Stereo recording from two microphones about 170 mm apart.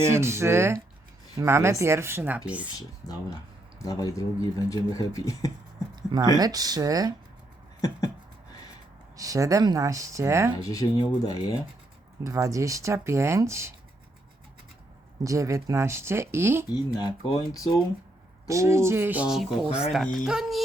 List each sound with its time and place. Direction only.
0.1 s speech: 15° right (ahead or behind)
2.7 s speech: 20° left (ahead or behind)
6.0 s a sound: 25° right (ahead or behind)
6.4 s speech: 20° right (ahead or behind)
7.8 s a sound: 20° left (ahead or behind)
9.1 s speech: 20° right (ahead or behind)
10.6 s speech: 20° left (ahead or behind)
12.2 s speech: 20° right (ahead or behind)
15.2 s speech: 20° right (ahead or behind)
16.7 s speech: 25° left (ahead or behind)
18.4 s speech: 15° right (ahead or behind); by 20.6 s centre (ahead or behind)